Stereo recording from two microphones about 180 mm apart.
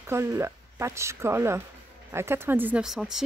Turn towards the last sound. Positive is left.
turn(degrees=-5)  # may be behind; listen again after turning